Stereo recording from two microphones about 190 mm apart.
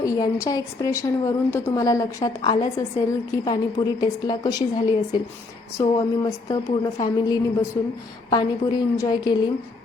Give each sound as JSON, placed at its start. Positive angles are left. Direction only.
{"t": 0.0, "sound": "a woman's voice", "side_deg": 15}